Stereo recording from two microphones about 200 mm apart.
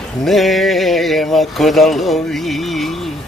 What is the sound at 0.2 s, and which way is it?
Speech, centre (ahead or behind).